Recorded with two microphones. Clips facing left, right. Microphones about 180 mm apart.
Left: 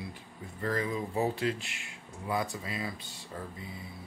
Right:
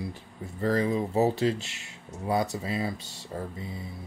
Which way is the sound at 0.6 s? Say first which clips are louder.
Right 6 dB; 30° right (ahead or behind).